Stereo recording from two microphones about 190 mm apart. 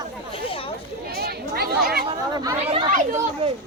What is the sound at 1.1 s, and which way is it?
Chatter, 55° right (ahead or behind).